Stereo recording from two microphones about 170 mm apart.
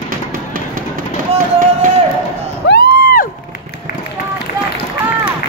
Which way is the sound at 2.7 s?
65° left (ahead or behind).